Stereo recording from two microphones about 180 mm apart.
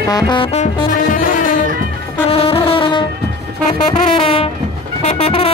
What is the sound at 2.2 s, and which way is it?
Brass instrument, 30° left (ahead or behind).